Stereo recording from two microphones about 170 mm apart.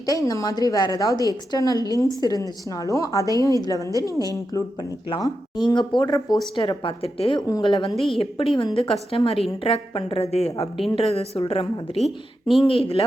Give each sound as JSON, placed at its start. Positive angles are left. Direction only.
{"t": 0.3, "sound": "a woman's voice", "side_deg": 20}
{"t": 7.9, "sound": "speech", "side_deg": 0}
{"t": 8.2, "sound": "a woman's voice", "side_deg": 30}
{"t": 11.9, "sound": "speech", "side_deg": 0}
{"t": 12.6, "sound": "a woman's voice", "side_deg": 35}